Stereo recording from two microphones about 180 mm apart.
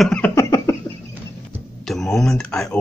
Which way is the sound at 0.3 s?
15° left (ahead or behind).